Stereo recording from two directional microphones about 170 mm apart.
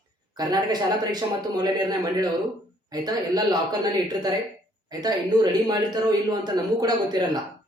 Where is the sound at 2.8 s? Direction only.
25° right (ahead or behind).